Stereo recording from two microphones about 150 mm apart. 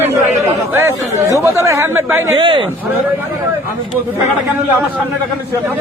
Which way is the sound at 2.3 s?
35° right (ahead or behind).